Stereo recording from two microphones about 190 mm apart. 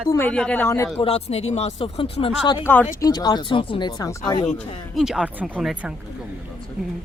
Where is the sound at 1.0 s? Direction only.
30° left (ahead or behind).